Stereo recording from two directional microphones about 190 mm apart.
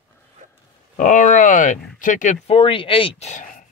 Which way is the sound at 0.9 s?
40° left (ahead or behind).